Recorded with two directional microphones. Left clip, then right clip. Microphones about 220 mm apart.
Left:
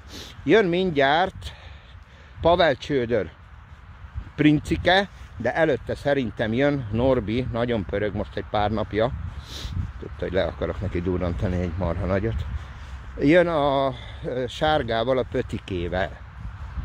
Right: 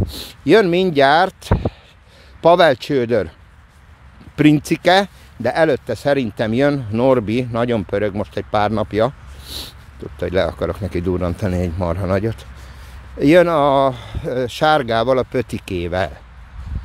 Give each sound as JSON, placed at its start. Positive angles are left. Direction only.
{"t": 0.1, "sound": "speech", "side_deg": -30}
{"t": 4.4, "sound": "speech", "side_deg": -30}